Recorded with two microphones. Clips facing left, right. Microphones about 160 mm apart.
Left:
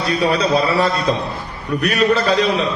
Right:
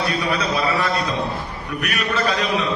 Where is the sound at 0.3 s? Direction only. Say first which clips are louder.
Left 7 dB; 35° left (ahead or behind).